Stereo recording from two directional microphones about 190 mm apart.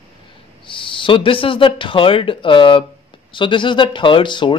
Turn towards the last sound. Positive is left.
turn(degrees=25)  # may be behind; listen again after turning